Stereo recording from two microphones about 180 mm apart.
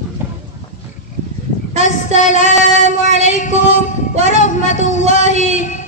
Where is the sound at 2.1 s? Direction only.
45° left (ahead or behind).